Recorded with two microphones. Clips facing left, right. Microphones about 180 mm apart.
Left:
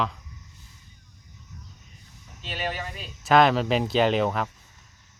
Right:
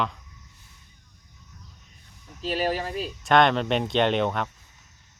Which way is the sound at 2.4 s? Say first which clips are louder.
Right 6 dB; 35° right (ahead or behind).